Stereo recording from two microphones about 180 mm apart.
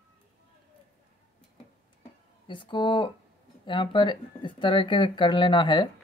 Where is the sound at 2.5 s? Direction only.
25° left (ahead or behind).